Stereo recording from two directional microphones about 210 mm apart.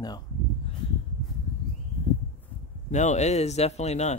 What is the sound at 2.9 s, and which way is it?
Speech, 35° left (ahead or behind).